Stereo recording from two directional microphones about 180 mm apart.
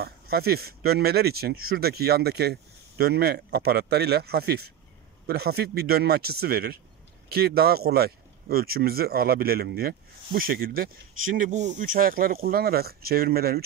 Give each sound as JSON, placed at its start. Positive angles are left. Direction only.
{"t": 0.0, "sound": "speech", "side_deg": -60}